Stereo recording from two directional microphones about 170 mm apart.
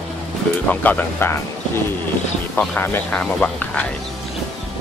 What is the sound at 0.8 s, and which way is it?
Speech, 10° left (ahead or behind).